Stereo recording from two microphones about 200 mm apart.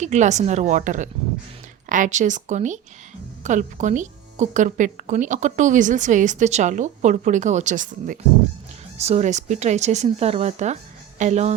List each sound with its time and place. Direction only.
0.0 s speech: 35° right (ahead or behind)